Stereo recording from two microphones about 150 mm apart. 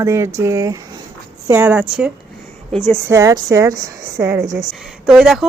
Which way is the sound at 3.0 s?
20° right (ahead or behind).